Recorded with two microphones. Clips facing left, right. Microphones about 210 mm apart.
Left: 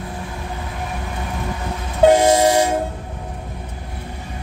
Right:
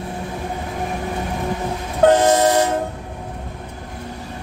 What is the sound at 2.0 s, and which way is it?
Train, 10° left (ahead or behind).